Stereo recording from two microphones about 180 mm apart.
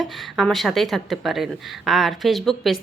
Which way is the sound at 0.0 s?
Centre (ahead or behind).